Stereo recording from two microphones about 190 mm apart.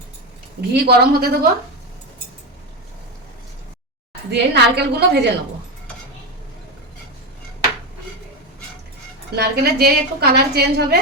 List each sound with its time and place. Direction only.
0.7 s a woman's voice: 55° right (ahead or behind)
4.3 s a woman's voice: 60° right (ahead or behind)
9.3 s a woman's voice: 55° right (ahead or behind)